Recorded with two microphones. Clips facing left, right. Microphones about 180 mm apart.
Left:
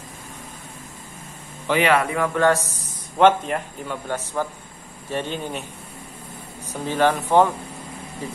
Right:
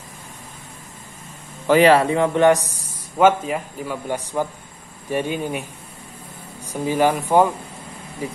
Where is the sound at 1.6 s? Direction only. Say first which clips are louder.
Right 6 dB; 35° right (ahead or behind); by 2.7 s 15° right (ahead or behind).